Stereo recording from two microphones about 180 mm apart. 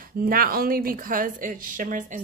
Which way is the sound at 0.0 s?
55° right (ahead or behind).